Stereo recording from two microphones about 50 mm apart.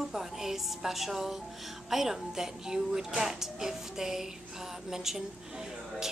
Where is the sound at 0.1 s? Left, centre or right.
Centre.